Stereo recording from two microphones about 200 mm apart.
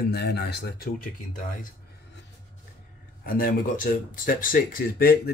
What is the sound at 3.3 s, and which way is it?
Speech, 45° left (ahead or behind).